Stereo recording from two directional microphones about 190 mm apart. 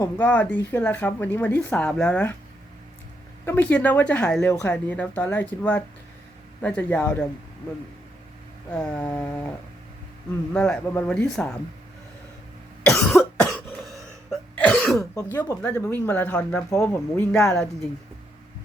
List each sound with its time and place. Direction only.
0.0 s speech: 10° left (ahead or behind)
3.4 s speech: 10° left (ahead or behind)
8.7 s speech: 5° left (ahead or behind)
10.5 s speech: 5° left (ahead or behind)
12.8 s cough: 5° left (ahead or behind)
15.1 s speech: 15° left (ahead or behind)